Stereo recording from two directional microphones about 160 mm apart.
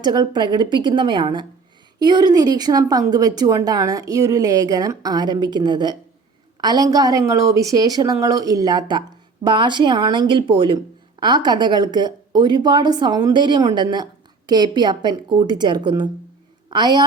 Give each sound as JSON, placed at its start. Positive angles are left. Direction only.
{"t": 0.0, "sound": "a woman's voice", "side_deg": -25}